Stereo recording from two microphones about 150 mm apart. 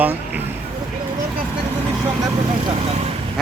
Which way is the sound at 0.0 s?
10° right (ahead or behind).